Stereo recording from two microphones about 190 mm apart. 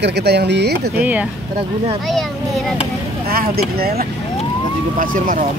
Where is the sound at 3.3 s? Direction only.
55° right (ahead or behind).